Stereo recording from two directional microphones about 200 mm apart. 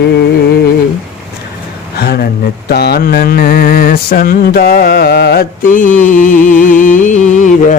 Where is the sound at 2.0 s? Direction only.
55° left (ahead or behind).